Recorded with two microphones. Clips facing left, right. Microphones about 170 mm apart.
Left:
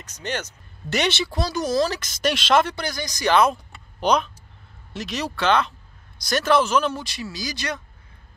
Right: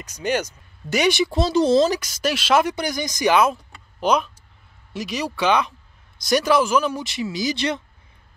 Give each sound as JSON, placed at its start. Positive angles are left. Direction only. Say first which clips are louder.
{"t": 0.0, "sound": "speech", "louder": "right 6 dB", "side_deg": -10}
{"t": 2.0, "sound": "speech", "louder": "even", "side_deg": -10}
{"t": 2.7, "sound": "speech", "louder": "right 4 dB", "side_deg": -20}
{"t": 4.0, "sound": "speech", "louder": "right 1 dB", "side_deg": -5}
{"t": 7.1, "sound": "speech", "louder": "right 7 dB", "side_deg": -20}